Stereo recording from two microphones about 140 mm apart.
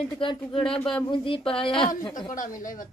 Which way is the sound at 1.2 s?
40° left (ahead or behind).